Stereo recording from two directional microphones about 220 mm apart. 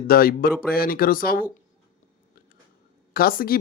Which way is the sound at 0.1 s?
40° left (ahead or behind).